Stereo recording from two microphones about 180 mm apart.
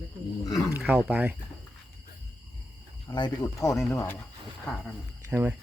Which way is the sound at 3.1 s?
25° left (ahead or behind).